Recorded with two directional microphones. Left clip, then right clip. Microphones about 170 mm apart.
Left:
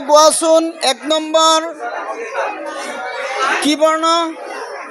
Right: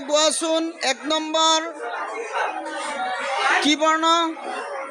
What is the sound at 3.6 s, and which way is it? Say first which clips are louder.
Music: left 5 dB; 15° right (ahead or behind).